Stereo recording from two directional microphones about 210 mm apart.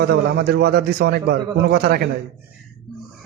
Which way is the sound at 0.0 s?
50° right (ahead or behind).